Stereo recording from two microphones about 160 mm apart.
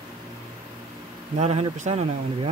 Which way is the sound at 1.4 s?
40° right (ahead or behind).